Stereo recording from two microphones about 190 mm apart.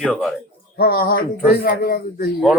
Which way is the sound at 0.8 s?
55° left (ahead or behind).